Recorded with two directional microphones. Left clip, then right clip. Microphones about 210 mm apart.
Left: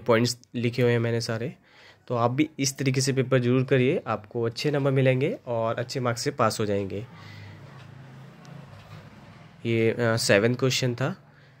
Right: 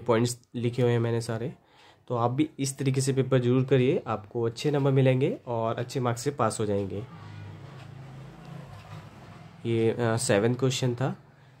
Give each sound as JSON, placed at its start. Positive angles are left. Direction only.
{"t": 0.0, "sound": "speech", "side_deg": 5}
{"t": 9.6, "sound": "speech", "side_deg": 5}